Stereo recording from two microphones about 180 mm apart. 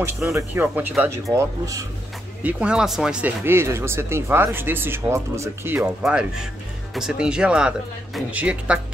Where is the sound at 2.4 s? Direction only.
5° right (ahead or behind).